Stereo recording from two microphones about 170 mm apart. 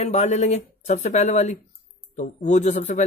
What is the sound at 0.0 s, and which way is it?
A man's voice, 40° left (ahead or behind).